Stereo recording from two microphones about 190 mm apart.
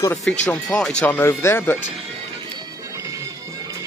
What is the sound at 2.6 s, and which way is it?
Bagpipes, 15° right (ahead or behind).